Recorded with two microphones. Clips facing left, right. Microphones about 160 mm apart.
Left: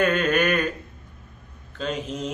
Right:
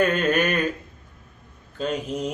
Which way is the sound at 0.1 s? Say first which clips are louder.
Even; 40° right (ahead or behind).